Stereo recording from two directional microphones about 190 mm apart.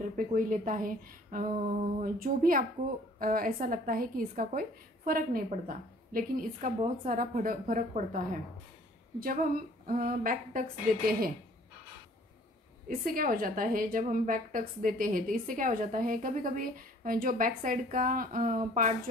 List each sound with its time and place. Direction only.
0.1 s a woman's voice: 45° right (ahead or behind)
9.8 s a woman's voice: 45° right (ahead or behind)
12.8 s a woman's voice: 50° right (ahead or behind)